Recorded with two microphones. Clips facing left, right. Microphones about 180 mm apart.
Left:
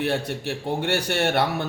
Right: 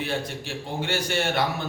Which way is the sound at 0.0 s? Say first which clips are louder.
Left 4 dB; 65° left (ahead or behind).